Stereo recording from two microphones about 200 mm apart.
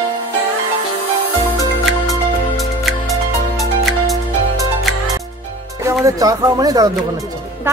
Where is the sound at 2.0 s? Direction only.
Centre (ahead or behind).